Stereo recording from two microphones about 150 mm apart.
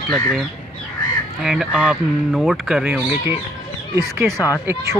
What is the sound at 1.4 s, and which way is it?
Speech, 5° right (ahead or behind).